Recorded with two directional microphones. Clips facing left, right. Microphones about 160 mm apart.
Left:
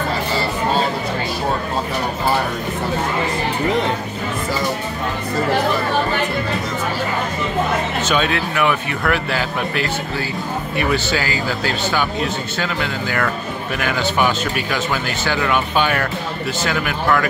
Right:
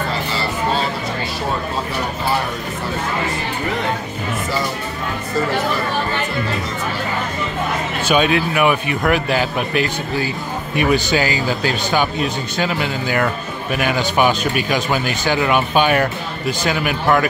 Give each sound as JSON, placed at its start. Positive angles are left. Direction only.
{"t": 8.0, "sound": "speech", "side_deg": -15}